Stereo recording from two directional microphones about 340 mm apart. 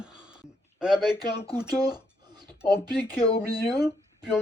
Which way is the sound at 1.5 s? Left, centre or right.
Centre.